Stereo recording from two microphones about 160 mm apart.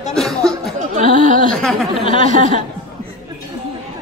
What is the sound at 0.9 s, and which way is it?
Speech, 55° right (ahead or behind).